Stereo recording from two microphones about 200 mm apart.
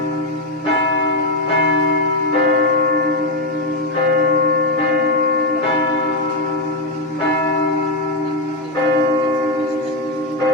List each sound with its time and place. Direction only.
2.5 s church bell: 55° right (ahead or behind)